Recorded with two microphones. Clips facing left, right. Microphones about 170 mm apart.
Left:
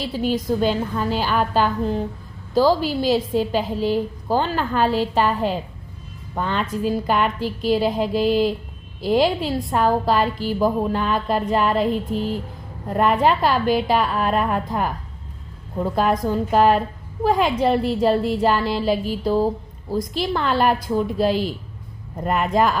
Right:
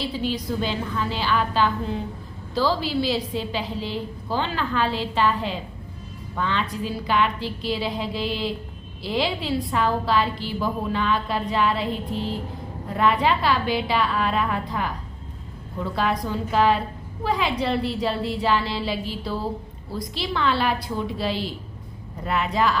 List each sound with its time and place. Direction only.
0.0 s a woman's voice: 45° left (ahead or behind)